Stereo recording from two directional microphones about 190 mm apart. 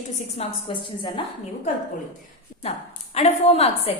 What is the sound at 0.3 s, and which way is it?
Speech, 25° left (ahead or behind).